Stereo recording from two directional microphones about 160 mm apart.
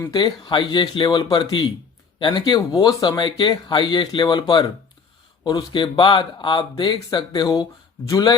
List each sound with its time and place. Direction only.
0.0 s speech: 25° left (ahead or behind)